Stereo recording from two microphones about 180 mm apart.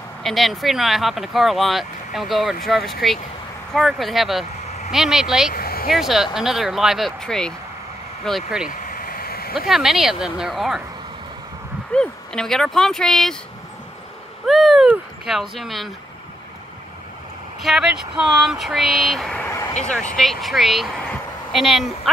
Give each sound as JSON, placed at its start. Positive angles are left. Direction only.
{"t": 0.2, "sound": "speech", "side_deg": 0}
{"t": 5.5, "sound": "a sound", "side_deg": 55}
{"t": 5.9, "sound": "speech", "side_deg": 0}
{"t": 8.6, "sound": "vehicle", "side_deg": 45}
{"t": 9.7, "sound": "speech", "side_deg": 0}
{"t": 11.9, "sound": "speech", "side_deg": 5}
{"t": 14.4, "sound": "speech", "side_deg": 0}
{"t": 17.6, "sound": "a woman's voice", "side_deg": 0}